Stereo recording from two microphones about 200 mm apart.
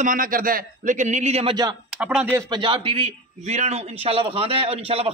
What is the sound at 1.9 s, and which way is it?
Speech, 5° right (ahead or behind).